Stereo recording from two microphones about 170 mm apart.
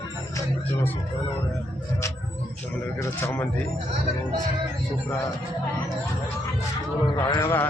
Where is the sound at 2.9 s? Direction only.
15° left (ahead or behind).